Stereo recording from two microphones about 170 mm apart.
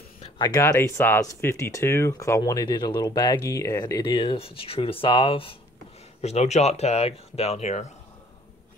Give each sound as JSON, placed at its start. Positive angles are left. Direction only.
{"t": 0.2, "sound": "speech", "side_deg": 25}